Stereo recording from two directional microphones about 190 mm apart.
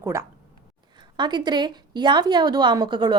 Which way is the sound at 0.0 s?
15° right (ahead or behind).